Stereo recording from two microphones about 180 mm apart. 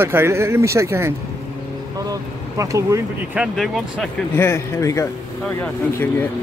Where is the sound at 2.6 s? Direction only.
15° right (ahead or behind).